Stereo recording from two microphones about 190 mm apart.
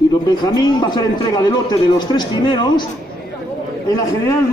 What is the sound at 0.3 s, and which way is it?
A man's voice, 20° left (ahead or behind).